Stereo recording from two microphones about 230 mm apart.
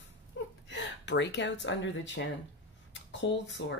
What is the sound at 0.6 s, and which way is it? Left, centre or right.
Speech, left.